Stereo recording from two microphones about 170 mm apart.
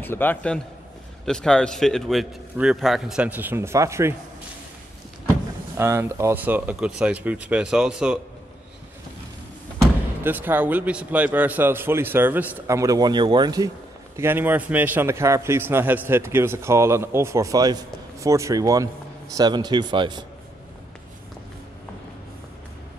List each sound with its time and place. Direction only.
0.0 s a man's voice: 10° left (ahead or behind); by 4.1 s 15° right (ahead or behind)
5.8 s a man's voice: 15° right (ahead or behind)
10.2 s a man's voice: 10° right (ahead or behind)
14.1 s a man's voice: 10° right (ahead or behind)